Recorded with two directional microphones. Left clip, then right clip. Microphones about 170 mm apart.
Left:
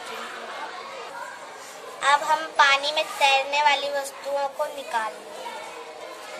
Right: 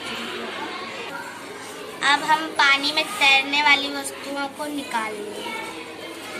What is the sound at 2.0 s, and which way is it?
A woman's voice, 45° left (ahead or behind).